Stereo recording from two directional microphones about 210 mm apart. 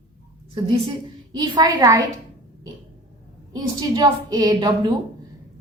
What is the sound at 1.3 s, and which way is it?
Speech, 20° right (ahead or behind).